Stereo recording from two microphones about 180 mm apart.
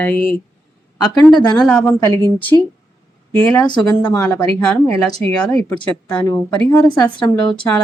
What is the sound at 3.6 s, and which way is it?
A woman's voice, 20° left (ahead or behind).